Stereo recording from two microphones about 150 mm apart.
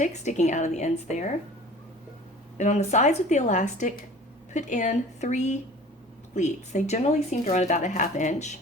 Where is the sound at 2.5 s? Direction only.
50° left (ahead or behind).